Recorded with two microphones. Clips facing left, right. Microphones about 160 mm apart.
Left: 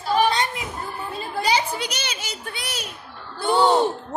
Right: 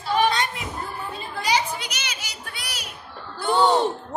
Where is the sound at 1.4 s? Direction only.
30° left (ahead or behind).